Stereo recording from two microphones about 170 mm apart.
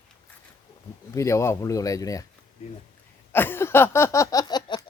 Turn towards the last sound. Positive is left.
turn(degrees=25)  # may be behind; listen again after turning